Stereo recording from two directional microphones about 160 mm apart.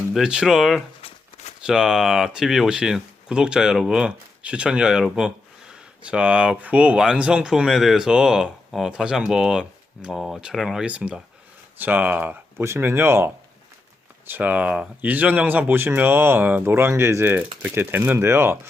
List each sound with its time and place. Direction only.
0.1 s speech: 5° right (ahead or behind)
1.0 s a sound: 35° left (ahead or behind)
1.6 s speech: 5° right (ahead or behind)